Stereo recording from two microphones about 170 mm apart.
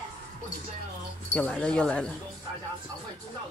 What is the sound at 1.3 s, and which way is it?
Speech, 5° left (ahead or behind).